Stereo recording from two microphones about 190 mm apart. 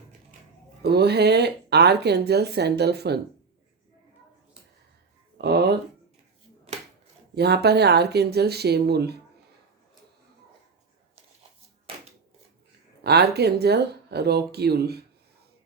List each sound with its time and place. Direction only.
0.8 s speech: 60° right (ahead or behind)
5.4 s speech: 60° right (ahead or behind)
7.3 s speech: 60° right (ahead or behind)
13.0 s speech: 60° right (ahead or behind)